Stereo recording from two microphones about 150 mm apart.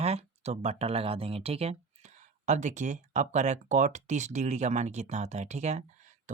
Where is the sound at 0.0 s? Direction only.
45° right (ahead or behind).